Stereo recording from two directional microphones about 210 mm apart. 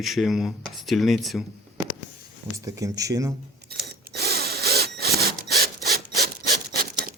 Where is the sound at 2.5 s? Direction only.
15° right (ahead or behind).